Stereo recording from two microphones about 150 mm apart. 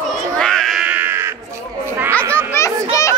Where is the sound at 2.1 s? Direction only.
10° left (ahead or behind).